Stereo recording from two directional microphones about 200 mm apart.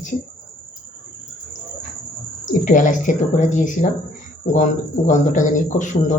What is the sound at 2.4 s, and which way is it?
Speech, 40° left (ahead or behind).